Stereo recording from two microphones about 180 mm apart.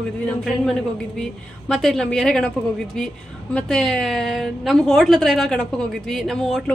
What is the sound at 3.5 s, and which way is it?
A woman's voice, 5° left (ahead or behind).